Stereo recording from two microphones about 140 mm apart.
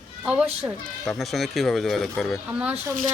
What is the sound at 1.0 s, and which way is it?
Speech, centre (ahead or behind).